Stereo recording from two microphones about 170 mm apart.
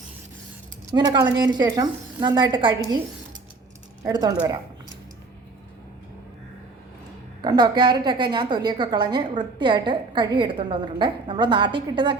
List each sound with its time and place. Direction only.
0.9 s a woman's voice: 25° right (ahead or behind)
4.0 s a woman's voice: 20° right (ahead or behind)
7.4 s a woman's voice: 25° right (ahead or behind)